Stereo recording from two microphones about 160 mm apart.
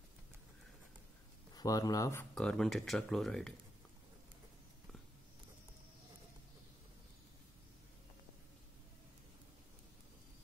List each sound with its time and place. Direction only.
1.5 s speech: 25° left (ahead or behind)
2.3 s speech: 5° left (ahead or behind)